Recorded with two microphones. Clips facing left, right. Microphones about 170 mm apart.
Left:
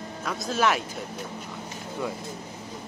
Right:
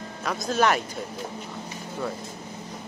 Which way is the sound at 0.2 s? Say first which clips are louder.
Right 2 dB; centre (ahead or behind).